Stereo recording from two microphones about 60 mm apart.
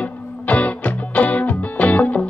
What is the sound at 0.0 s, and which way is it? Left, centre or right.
Music, left.